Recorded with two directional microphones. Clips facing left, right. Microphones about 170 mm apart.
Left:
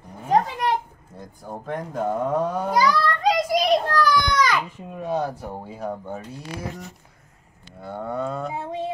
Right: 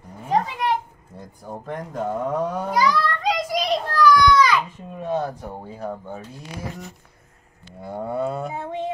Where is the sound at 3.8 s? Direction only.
50° left (ahead or behind).